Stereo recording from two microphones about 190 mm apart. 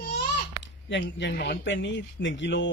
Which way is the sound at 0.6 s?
65° left (ahead or behind).